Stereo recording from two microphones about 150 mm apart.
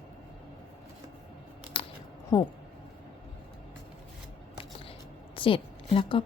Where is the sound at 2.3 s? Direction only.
30° left (ahead or behind).